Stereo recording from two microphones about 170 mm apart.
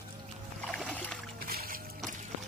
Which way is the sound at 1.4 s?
60° right (ahead or behind).